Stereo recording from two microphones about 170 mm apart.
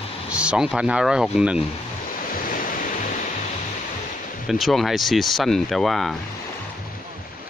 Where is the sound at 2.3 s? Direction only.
55° left (ahead or behind).